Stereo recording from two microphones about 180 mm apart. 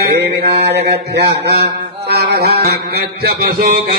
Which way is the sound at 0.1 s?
65° right (ahead or behind).